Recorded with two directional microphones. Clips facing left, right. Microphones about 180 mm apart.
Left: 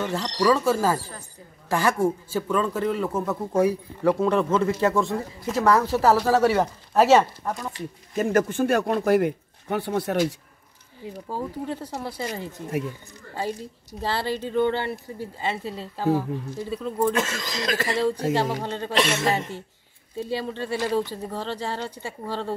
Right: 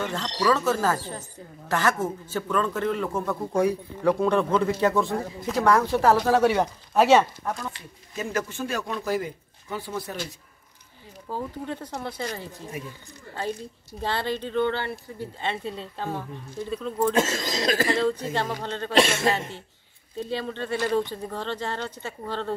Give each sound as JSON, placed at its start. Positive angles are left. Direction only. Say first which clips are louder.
{"t": 0.0, "sound": "a man's voice", "louder": "left 3 dB", "side_deg": 10}
{"t": 7.7, "sound": "speech", "louder": "left 8 dB", "side_deg": 50}
{"t": 11.2, "sound": "speech", "louder": "left 1 dB", "side_deg": 10}
{"t": 14.0, "sound": "speech", "louder": "left 1 dB", "side_deg": 5}
{"t": 17.1, "sound": "speech", "louder": "right 2 dB", "side_deg": -25}
{"t": 17.8, "sound": "speech", "louder": "left 1 dB", "side_deg": 10}
{"t": 20.2, "sound": "speech", "louder": "left 1 dB", "side_deg": 10}